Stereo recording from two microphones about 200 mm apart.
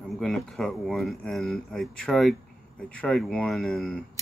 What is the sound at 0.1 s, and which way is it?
Speech, centre (ahead or behind).